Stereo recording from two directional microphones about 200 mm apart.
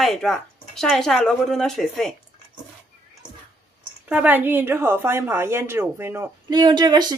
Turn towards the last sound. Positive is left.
turn(degrees=-20)  # may be behind; listen again after turning